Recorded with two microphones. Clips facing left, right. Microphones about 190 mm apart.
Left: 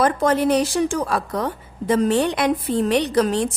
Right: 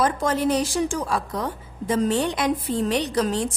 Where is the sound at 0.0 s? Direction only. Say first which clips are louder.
Left 4 dB; 60° left (ahead or behind).